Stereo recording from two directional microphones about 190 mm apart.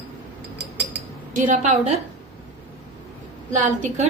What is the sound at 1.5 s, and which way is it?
Speech, 45° right (ahead or behind).